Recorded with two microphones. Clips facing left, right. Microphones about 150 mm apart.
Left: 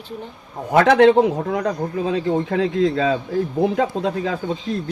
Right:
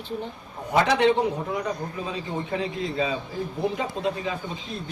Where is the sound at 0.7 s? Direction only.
60° left (ahead or behind); by 4.3 s 75° left (ahead or behind).